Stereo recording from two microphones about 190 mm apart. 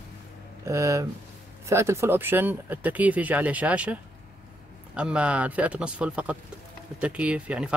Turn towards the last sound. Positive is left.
turn(degrees=-5)  # may be behind; listen again after turning